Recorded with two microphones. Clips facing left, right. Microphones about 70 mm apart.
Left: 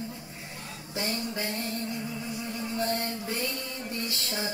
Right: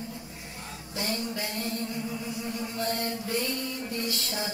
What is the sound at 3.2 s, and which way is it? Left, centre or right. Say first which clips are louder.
Music: right 2 dB; left.